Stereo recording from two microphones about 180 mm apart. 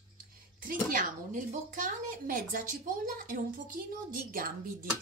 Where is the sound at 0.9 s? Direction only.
45° right (ahead or behind).